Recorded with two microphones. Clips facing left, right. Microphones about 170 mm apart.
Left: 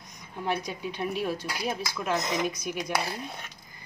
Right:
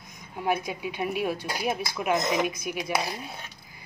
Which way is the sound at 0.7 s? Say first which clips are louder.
Right 2 dB; 10° right (ahead or behind).